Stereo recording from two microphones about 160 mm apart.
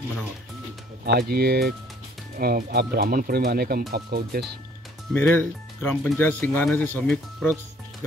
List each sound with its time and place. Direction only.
1.0 s speech: 80° right
5.1 s speech: 10° left (ahead or behind)